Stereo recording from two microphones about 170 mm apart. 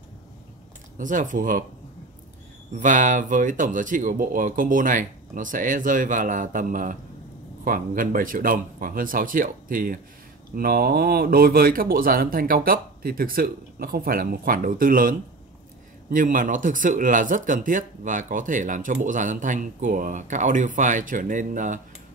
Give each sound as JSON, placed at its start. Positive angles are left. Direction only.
{"t": 0.9, "sound": "speech", "side_deg": -50}
{"t": 2.8, "sound": "speech", "side_deg": -50}